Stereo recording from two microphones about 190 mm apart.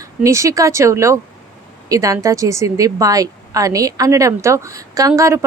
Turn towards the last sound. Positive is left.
turn(degrees=-15)  # may be behind; listen again after turning